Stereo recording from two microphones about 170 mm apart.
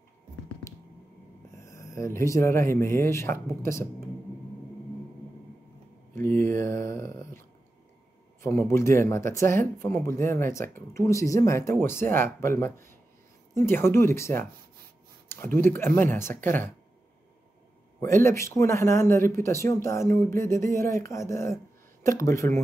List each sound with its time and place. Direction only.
1.6 s speech: 20° left (ahead or behind)
6.1 s a sound: 15° left (ahead or behind)
8.4 s speech: 15° left (ahead or behind)
18.0 s speech: 15° left (ahead or behind)